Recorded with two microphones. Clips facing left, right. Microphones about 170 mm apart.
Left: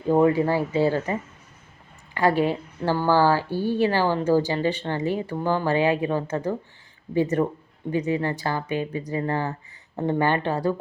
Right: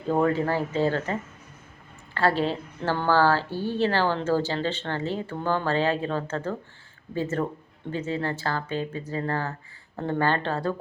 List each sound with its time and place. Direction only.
0.1 s speech: 15° left (ahead or behind)